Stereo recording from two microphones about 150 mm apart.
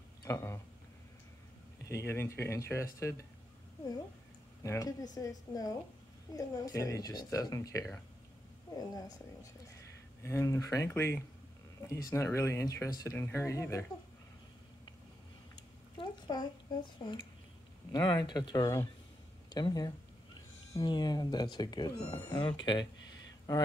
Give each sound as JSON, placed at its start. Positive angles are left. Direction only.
{"t": 0.2, "sound": "speech", "side_deg": 20}
{"t": 1.9, "sound": "speech", "side_deg": 15}
{"t": 4.6, "sound": "speech", "side_deg": 25}
{"t": 15.5, "sound": "a sound", "side_deg": 30}
{"t": 17.9, "sound": "speech", "side_deg": 30}